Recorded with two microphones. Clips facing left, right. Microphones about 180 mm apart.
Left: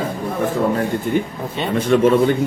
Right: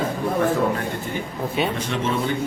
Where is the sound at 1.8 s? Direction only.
55° left (ahead or behind).